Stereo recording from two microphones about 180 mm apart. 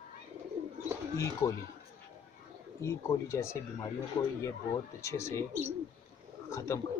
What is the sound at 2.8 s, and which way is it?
Speech, 15° left (ahead or behind).